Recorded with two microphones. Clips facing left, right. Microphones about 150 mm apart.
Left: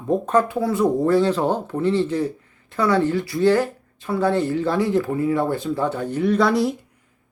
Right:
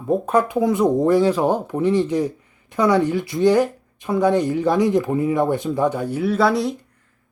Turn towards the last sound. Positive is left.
turn(degrees=0)  # may be behind; listen again after turning